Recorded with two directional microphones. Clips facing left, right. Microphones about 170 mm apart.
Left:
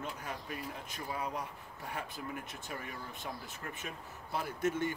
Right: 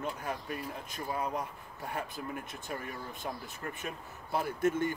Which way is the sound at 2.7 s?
45° right (ahead or behind).